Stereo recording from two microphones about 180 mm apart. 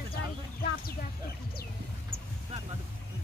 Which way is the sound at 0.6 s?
55° left (ahead or behind).